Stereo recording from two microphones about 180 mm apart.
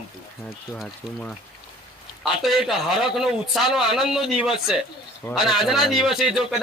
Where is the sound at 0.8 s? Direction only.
5° left (ahead or behind).